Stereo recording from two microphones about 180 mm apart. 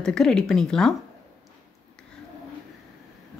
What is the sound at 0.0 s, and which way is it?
Speech, 5° left (ahead or behind).